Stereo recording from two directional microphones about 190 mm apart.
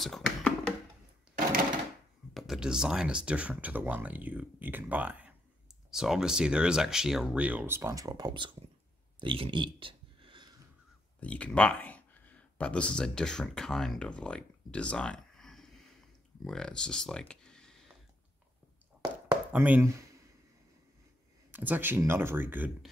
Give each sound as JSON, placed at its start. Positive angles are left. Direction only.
{"t": 0.0, "sound": "a sound", "side_deg": 0}
{"t": 2.3, "sound": "speech", "side_deg": 0}
{"t": 9.2, "sound": "a sound", "side_deg": -25}
{"t": 11.1, "sound": "speech", "side_deg": 5}
{"t": 19.5, "sound": "speech", "side_deg": -10}
{"t": 21.5, "sound": "speech", "side_deg": -10}